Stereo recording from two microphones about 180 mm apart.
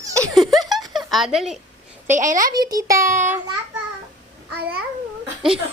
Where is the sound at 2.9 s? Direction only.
15° right (ahead or behind).